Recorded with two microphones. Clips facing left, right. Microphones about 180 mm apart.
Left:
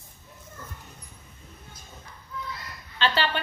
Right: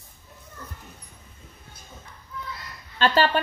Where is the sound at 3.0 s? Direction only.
45° right (ahead or behind).